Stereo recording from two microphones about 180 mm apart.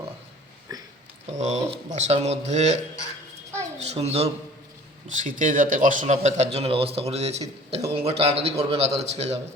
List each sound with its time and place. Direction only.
0.7 s a sound: 20° right (ahead or behind)
1.3 s a man's voice: 40° right (ahead or behind)
3.8 s a man's voice: 35° right (ahead or behind)
5.1 s a man's voice: 45° right (ahead or behind)